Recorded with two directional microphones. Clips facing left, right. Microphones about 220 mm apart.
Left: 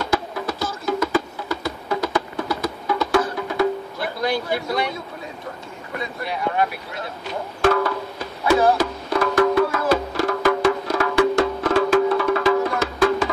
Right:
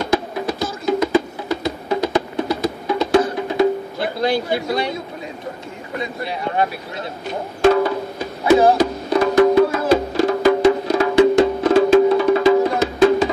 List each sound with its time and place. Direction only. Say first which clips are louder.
0.0 s music: right 4 dB; 20° right (ahead or behind)
6.2 s speech: right 1 dB; 30° right (ahead or behind)
7.6 s percussion: right 5 dB; 20° right (ahead or behind)
8.5 s music: right 4 dB; 20° right (ahead or behind)